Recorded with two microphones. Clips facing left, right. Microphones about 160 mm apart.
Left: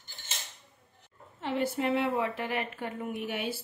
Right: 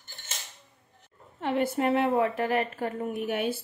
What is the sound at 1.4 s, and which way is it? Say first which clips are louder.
A woman's voice: right 4 dB; 55° right (ahead or behind).